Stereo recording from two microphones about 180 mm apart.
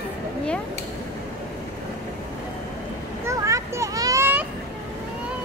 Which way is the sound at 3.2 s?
15° right (ahead or behind).